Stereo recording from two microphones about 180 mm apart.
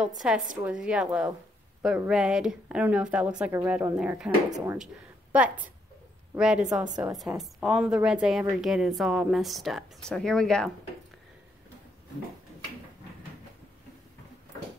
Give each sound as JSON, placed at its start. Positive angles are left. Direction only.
{"t": 0.0, "sound": "a woman's voice", "side_deg": -5}
{"t": 4.5, "sound": "speech", "side_deg": -20}
{"t": 6.3, "sound": "a woman's voice", "side_deg": -5}